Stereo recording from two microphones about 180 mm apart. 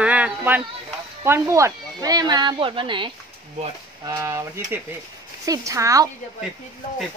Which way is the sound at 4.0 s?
15° right (ahead or behind).